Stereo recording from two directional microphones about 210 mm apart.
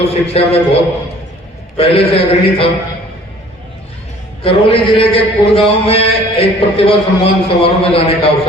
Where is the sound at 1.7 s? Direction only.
25° left (ahead or behind).